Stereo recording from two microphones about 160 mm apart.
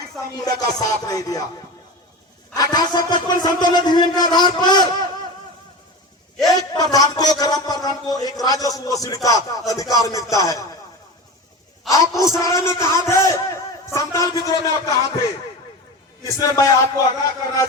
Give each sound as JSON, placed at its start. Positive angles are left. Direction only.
{"t": 0.3, "sound": "a man's voice", "side_deg": 25}
{"t": 2.6, "sound": "a man's voice", "side_deg": 25}
{"t": 6.5, "sound": "a man's voice", "side_deg": 25}
{"t": 11.9, "sound": "a woman's voice", "side_deg": 20}
{"t": 16.2, "sound": "a man's voice", "side_deg": 20}